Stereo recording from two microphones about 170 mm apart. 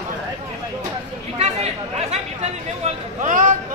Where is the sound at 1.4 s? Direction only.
40° right (ahead or behind).